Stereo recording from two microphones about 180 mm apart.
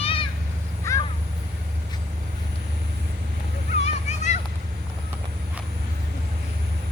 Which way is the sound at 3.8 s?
40° left (ahead or behind).